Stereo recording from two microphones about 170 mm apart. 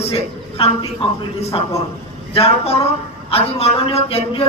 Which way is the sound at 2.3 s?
35° left (ahead or behind).